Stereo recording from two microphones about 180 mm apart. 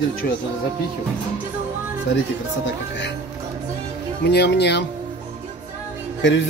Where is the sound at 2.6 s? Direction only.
80° left.